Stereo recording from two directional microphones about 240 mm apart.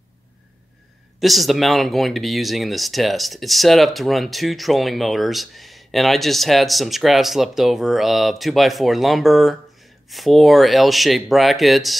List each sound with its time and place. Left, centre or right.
1.2 s speech: centre